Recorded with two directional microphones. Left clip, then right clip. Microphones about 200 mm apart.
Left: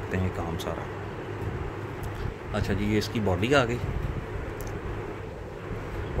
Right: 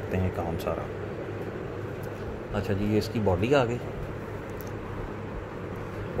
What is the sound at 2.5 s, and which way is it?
Speech, 15° left (ahead or behind).